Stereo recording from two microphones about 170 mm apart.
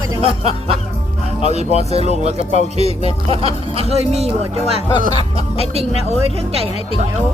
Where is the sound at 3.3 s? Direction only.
35° right (ahead or behind).